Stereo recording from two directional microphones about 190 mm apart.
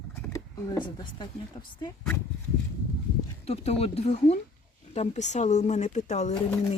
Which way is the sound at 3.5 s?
30° left (ahead or behind).